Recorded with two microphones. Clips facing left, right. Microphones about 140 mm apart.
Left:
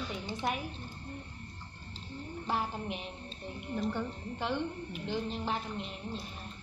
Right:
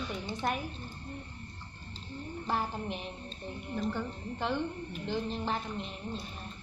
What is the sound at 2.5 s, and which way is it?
Speech, 5° left (ahead or behind).